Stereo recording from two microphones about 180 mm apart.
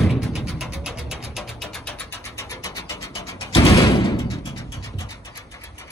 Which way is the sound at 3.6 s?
20° left (ahead or behind).